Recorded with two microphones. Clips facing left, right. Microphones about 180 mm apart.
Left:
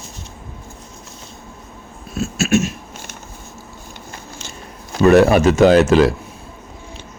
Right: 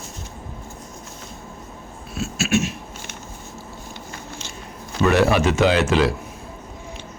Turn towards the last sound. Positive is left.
turn(degrees=45)  # may be behind; listen again after turning